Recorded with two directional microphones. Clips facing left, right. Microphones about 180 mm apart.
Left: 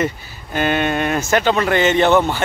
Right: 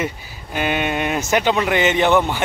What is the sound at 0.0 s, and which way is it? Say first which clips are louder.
Speech: left 4 dB; 10° right (ahead or behind).